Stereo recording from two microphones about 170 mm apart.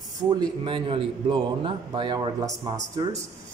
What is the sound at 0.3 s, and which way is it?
A man's voice, 25° right (ahead or behind).